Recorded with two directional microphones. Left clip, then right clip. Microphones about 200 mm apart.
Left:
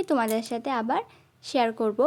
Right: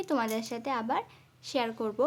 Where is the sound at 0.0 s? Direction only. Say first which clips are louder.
Left 5 dB; 20° left (ahead or behind).